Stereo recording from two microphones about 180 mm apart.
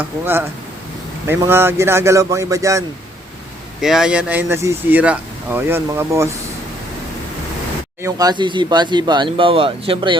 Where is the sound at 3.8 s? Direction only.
5° right (ahead or behind).